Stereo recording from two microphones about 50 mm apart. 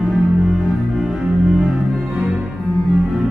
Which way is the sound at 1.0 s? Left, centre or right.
Centre.